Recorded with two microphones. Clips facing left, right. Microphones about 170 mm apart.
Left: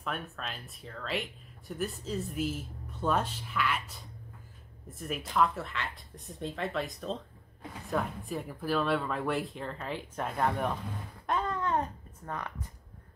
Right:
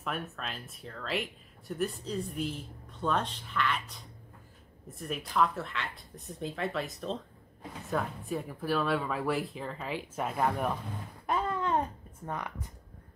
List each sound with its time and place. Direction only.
0.0 s speech: centre (ahead or behind)
11.2 s a sound: 10° right (ahead or behind)
12.3 s speech: 15° right (ahead or behind)